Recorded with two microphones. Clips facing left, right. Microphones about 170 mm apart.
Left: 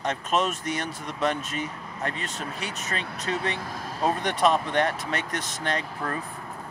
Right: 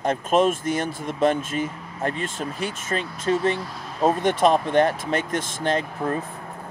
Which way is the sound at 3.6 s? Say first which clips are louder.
Right 1 dB; 45° left (ahead or behind).